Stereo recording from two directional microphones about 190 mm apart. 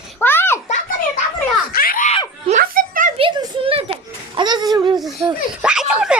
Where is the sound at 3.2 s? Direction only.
25° right (ahead or behind).